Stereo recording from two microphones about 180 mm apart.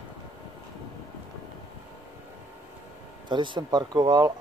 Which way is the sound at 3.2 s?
25° right (ahead or behind).